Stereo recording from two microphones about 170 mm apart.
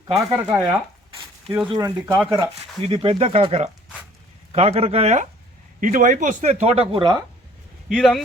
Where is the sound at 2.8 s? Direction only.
35° right (ahead or behind).